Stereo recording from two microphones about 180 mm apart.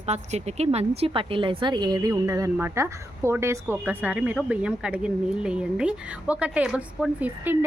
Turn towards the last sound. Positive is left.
turn(degrees=-10)  # may be behind; listen again after turning